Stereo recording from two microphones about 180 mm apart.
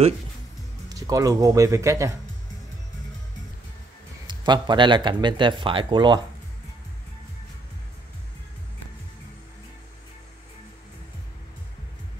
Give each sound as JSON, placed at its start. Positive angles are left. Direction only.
{"t": 0.8, "sound": "speech", "side_deg": -20}
{"t": 4.3, "sound": "speech", "side_deg": -25}